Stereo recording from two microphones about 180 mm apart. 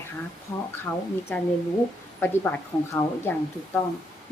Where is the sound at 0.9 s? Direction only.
20° left (ahead or behind).